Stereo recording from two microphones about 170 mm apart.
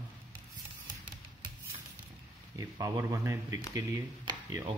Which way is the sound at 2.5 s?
20° right (ahead or behind).